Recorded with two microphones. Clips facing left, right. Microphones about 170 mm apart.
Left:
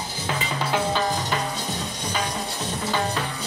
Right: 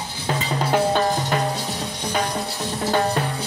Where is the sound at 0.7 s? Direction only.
50° right (ahead or behind).